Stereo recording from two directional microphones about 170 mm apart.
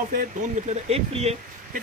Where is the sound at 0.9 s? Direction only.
35° right (ahead or behind).